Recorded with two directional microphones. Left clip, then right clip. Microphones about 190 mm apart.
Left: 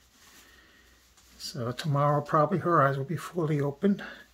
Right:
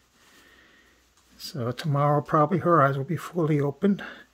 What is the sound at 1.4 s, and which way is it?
Speech, 35° right (ahead or behind).